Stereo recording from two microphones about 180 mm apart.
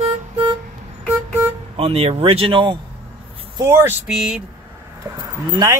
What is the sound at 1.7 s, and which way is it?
Speech, 35° right (ahead or behind).